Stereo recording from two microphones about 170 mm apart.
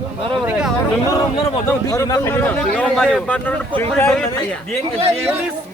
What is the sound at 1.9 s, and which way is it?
A man's voice, 20° left (ahead or behind).